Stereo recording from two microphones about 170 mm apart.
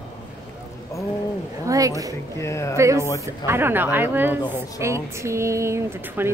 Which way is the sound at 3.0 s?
20° left (ahead or behind).